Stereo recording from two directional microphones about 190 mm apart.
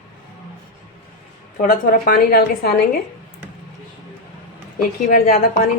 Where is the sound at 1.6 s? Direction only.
50° left (ahead or behind).